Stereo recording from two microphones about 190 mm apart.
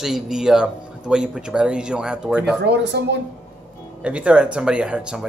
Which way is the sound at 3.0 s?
60° right (ahead or behind).